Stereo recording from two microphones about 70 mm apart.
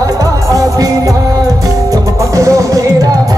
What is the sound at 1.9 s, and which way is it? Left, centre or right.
Music, right.